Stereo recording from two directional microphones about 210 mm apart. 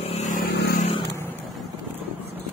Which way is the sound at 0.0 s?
30° left (ahead or behind).